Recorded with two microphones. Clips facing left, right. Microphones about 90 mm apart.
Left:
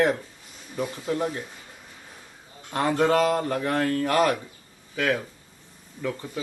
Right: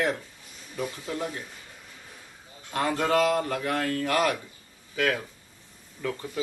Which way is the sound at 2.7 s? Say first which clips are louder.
Left 3 dB; 30° left (ahead or behind).